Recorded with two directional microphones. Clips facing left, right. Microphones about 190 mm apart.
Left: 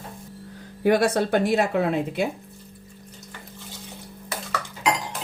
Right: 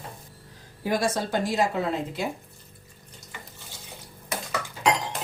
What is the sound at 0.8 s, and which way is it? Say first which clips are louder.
Speech: left 6 dB; 65° left (ahead or behind).